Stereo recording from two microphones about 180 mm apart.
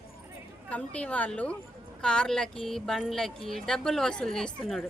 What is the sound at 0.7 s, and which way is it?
Speech, 5° left (ahead or behind).